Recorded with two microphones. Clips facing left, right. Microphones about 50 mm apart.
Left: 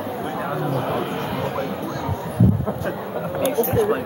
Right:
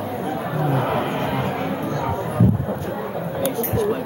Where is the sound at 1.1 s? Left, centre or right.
Centre.